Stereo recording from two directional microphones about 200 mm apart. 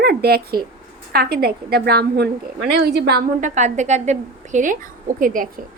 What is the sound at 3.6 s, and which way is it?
A woman's voice, 35° right (ahead or behind).